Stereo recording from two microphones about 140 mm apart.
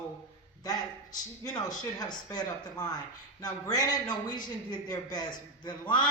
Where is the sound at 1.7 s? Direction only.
30° left (ahead or behind).